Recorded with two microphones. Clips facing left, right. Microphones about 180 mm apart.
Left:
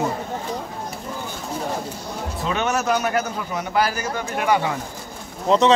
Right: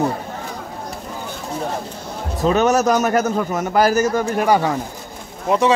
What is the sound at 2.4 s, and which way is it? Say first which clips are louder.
A man's voice: right 8 dB; 40° right (ahead or behind).